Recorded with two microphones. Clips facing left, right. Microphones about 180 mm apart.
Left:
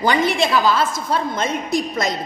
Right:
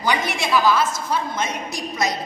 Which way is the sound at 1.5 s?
55° left (ahead or behind).